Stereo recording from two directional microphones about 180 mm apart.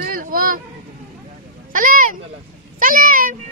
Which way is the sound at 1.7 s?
50° right (ahead or behind).